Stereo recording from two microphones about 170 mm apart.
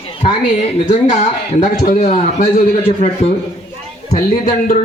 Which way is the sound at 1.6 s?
45° left (ahead or behind).